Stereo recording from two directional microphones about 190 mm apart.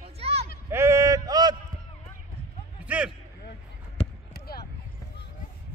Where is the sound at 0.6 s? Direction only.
15° right (ahead or behind).